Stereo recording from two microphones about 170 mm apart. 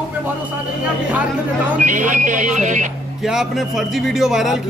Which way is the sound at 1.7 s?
50° right (ahead or behind).